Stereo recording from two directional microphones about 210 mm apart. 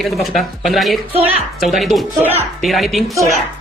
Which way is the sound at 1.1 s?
25° right (ahead or behind).